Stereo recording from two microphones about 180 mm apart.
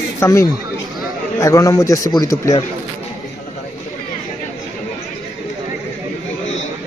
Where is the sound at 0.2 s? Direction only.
15° left (ahead or behind).